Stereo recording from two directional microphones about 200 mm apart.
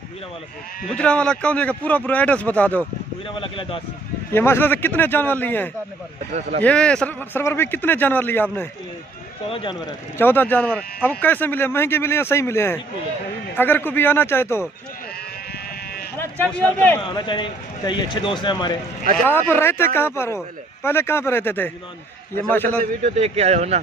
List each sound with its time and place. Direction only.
0.9 s speech: 5° left (ahead or behind)
3.3 s speech: 25° left (ahead or behind)
4.3 s speech: 10° left (ahead or behind)
9.5 s speech: 25° left (ahead or behind)
15.5 s sheep: 50° left (ahead or behind)
16.2 s speech: 10° left (ahead or behind)
17.0 s speech: 25° left (ahead or behind)
19.2 s speech: 10° left (ahead or behind)
22.8 s speech: 35° right (ahead or behind)